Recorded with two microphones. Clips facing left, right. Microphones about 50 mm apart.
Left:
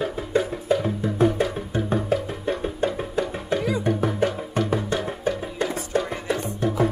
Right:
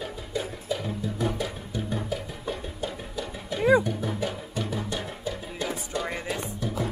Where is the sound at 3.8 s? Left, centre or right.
Left.